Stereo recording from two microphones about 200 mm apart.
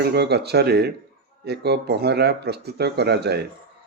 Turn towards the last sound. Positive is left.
turn(degrees=-55)  # may be behind; listen again after turning